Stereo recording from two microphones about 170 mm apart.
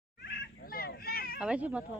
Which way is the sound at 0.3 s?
60° left (ahead or behind).